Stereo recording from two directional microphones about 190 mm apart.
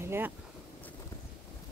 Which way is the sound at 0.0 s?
15° right (ahead or behind).